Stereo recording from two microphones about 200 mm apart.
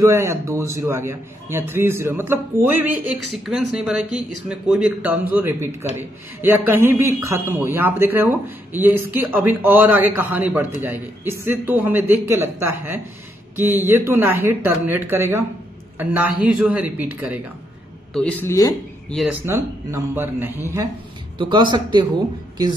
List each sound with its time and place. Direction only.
0.0 s speech: 15° right (ahead or behind)
18.1 s speech: 5° left (ahead or behind)
19.4 s speech: 10° right (ahead or behind)